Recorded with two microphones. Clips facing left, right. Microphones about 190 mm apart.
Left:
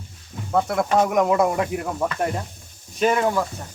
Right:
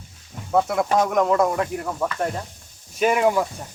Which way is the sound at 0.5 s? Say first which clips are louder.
Even; centre (ahead or behind).